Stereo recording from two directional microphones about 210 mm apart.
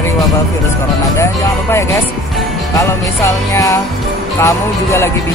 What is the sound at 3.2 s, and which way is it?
Speech, 15° left (ahead or behind).